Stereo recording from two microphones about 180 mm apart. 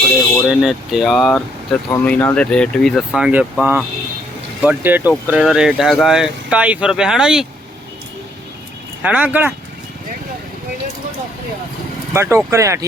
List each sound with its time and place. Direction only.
0.6 s speech: centre (ahead or behind)
1.9 s speech: 10° left (ahead or behind)
9.0 s speech: 10° right (ahead or behind)
12.1 s speech: 15° right (ahead or behind)